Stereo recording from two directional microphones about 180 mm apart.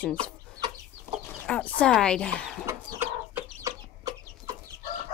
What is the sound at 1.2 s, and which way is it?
Chicken, 5° left (ahead or behind).